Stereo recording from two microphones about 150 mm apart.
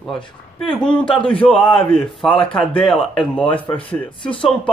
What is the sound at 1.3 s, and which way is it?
Speech, 5° left (ahead or behind).